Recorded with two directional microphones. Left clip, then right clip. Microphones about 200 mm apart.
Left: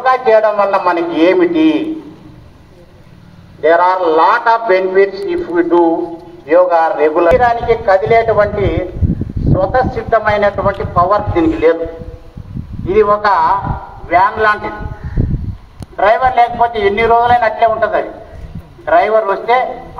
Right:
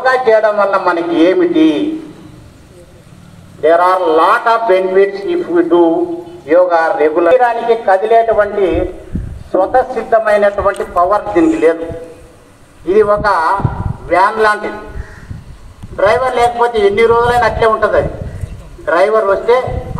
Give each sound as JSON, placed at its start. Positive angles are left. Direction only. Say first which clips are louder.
{"t": 0.0, "sound": "a man's voice", "louder": "even", "side_deg": -45}
{"t": 3.6, "sound": "a man's voice", "louder": "right 1 dB", "side_deg": -35}
{"t": 6.4, "sound": "a man's voice", "louder": "even", "side_deg": -45}
{"t": 12.8, "sound": "a man's voice", "louder": "even", "side_deg": -20}
{"t": 16.0, "sound": "a man's voice", "louder": "left 1 dB", "side_deg": 0}